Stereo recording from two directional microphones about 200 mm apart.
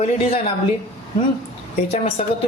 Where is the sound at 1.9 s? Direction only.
30° left (ahead or behind).